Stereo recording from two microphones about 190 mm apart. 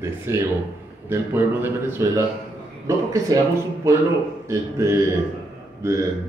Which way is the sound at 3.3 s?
20° right (ahead or behind).